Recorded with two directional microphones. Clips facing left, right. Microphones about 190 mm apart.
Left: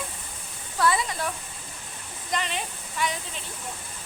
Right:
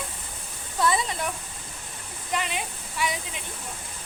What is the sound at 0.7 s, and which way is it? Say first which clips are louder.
Speech: even; 20° right (ahead or behind).